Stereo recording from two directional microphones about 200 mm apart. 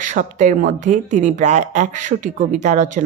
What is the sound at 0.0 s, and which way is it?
Speech, 40° right (ahead or behind).